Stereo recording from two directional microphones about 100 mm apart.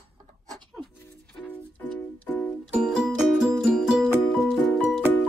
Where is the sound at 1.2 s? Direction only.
10° left (ahead or behind).